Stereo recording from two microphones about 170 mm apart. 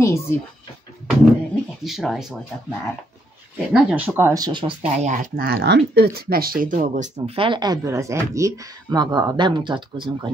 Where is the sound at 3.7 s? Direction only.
5° right (ahead or behind); by 4.7 s 25° right (ahead or behind).